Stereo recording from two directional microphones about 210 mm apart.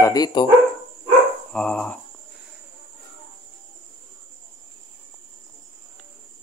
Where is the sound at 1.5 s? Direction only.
5° left (ahead or behind).